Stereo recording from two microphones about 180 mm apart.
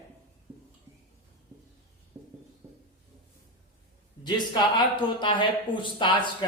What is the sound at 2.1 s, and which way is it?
Music, 20° right (ahead or behind).